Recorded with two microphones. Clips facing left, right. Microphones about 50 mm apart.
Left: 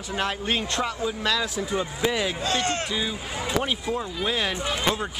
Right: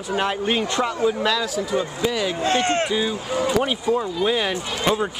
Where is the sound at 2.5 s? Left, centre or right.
Right.